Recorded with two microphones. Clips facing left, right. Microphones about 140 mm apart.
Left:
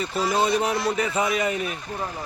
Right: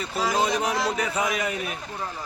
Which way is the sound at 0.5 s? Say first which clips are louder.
Left 2 dB; 90° right.